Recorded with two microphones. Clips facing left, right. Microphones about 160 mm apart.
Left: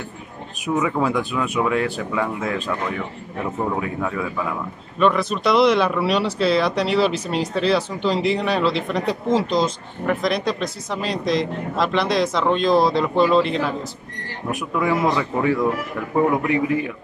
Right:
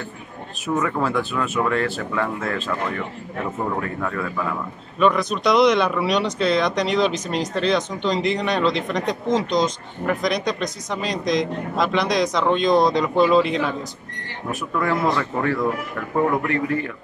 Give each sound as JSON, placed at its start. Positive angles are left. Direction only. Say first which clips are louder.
{"t": 0.7, "sound": "a man's voice", "louder": "left 1 dB", "side_deg": 5}